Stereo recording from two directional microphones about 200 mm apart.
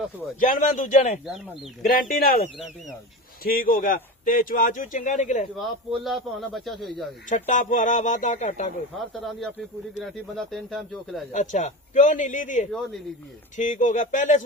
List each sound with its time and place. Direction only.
0.3 s a man's voice: 40° left (ahead or behind)
3.4 s speech: 45° left (ahead or behind)
5.5 s a man's voice: centre (ahead or behind)
7.3 s a man's voice: 40° left (ahead or behind)
9.0 s a man's voice: centre (ahead or behind)
11.3 s a man's voice: 35° left (ahead or behind)